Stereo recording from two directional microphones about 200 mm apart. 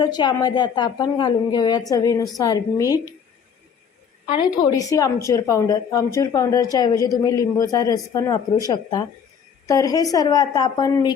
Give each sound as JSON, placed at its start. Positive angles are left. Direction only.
{"t": 0.0, "sound": "a woman's voice", "side_deg": 20}
{"t": 4.3, "sound": "a woman's voice", "side_deg": 20}